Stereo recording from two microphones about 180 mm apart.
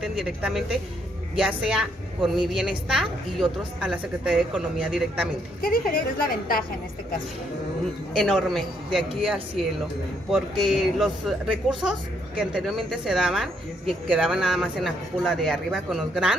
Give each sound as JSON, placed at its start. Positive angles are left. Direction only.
{"t": 0.0, "sound": "a woman's voice", "side_deg": 0}
{"t": 5.6, "sound": "a woman's voice", "side_deg": 55}
{"t": 8.1, "sound": "a woman's voice", "side_deg": 0}
{"t": 10.3, "sound": "a woman's voice", "side_deg": 0}